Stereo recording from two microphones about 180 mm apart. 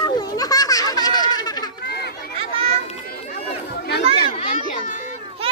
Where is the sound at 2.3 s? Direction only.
30° right (ahead or behind).